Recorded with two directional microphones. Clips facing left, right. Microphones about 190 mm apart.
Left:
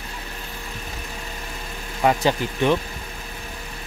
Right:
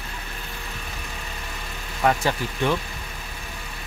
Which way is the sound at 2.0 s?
15° left (ahead or behind).